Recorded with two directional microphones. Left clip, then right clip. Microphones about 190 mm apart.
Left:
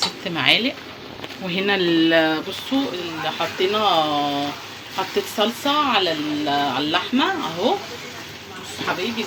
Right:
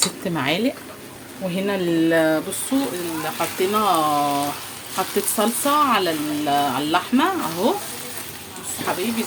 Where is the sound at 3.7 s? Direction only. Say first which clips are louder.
Left 1 dB; 45° right (ahead or behind).